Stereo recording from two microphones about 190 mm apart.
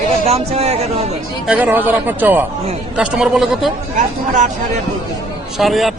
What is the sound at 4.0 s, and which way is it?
Speech, 40° right (ahead or behind).